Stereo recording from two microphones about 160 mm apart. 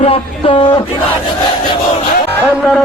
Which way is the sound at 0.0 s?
35° left (ahead or behind).